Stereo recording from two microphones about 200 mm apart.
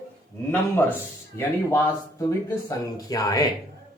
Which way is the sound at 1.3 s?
10° left (ahead or behind).